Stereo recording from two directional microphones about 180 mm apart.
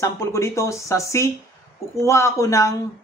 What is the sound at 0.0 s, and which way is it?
Speech, 15° left (ahead or behind).